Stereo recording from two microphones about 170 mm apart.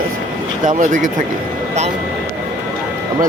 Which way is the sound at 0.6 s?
50° right (ahead or behind).